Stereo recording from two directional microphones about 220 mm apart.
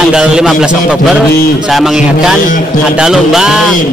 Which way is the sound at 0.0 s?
5° right (ahead or behind).